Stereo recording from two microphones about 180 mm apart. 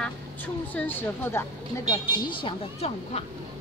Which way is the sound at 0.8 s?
10° left (ahead or behind).